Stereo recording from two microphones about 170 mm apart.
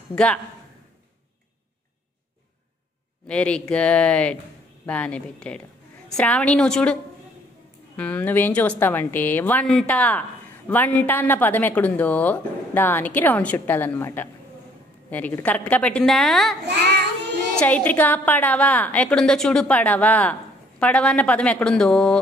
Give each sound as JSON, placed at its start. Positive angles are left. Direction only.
{"t": 0.1, "sound": "a woman's voice", "side_deg": 5}
{"t": 3.3, "sound": "a woman's voice", "side_deg": 5}
{"t": 16.6, "sound": "child singing", "side_deg": -80}
{"t": 17.6, "sound": "a woman's voice", "side_deg": 10}